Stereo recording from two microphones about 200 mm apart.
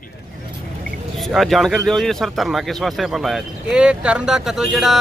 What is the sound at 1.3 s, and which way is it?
A man's voice, centre (ahead or behind).